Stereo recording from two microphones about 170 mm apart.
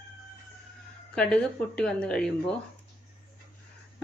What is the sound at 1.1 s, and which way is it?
Speech, 5° left (ahead or behind).